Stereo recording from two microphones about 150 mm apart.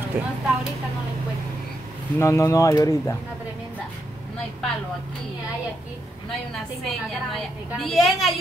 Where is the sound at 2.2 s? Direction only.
20° left (ahead or behind).